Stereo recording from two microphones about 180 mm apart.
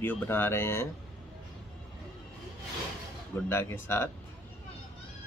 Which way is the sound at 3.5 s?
15° left (ahead or behind).